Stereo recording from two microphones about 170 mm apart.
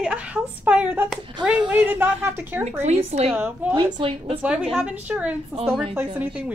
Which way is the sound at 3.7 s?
30° right (ahead or behind).